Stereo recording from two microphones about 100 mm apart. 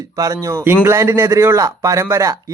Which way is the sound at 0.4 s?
25° right (ahead or behind).